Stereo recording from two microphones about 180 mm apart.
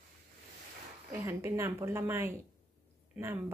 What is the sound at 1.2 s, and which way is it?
Speech, 15° right (ahead or behind).